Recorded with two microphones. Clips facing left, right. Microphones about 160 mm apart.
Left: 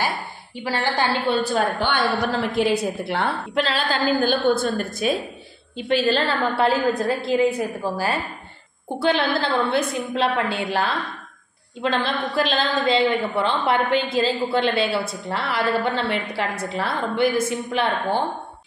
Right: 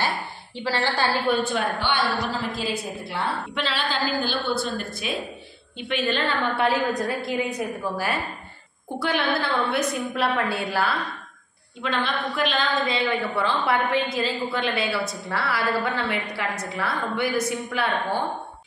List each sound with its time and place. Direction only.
0.7 s a woman's voice: 15° left (ahead or behind)
1.4 s a woman's voice: 40° left (ahead or behind)
2.5 s a woman's voice: 65° left (ahead or behind)
3.5 s a woman's voice: 45° left (ahead or behind); by 10.9 s 20° left (ahead or behind)
11.8 s a woman's voice: 35° left (ahead or behind)